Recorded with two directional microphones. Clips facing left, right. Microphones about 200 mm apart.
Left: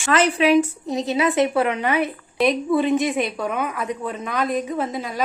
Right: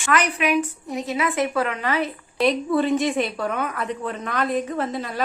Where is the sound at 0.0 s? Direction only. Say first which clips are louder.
Left 4 dB; 25° left (ahead or behind).